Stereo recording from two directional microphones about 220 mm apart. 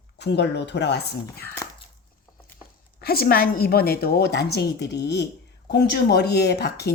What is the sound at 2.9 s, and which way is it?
Speech, 45° left (ahead or behind).